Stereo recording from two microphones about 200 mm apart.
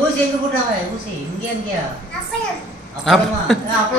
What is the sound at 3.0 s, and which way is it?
Speech, centre (ahead or behind).